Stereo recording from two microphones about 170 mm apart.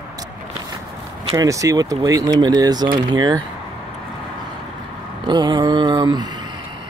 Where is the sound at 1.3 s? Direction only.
20° right (ahead or behind).